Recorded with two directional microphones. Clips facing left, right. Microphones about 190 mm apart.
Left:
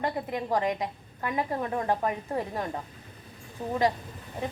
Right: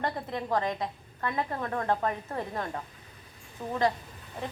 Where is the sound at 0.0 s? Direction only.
15° left (ahead or behind).